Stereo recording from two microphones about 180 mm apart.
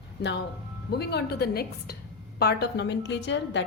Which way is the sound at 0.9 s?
65° left (ahead or behind).